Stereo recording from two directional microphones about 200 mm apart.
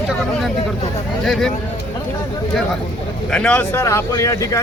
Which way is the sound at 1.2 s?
Centre (ahead or behind).